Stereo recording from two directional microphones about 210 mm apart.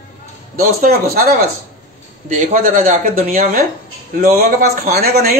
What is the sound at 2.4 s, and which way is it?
Speech, 40° right (ahead or behind).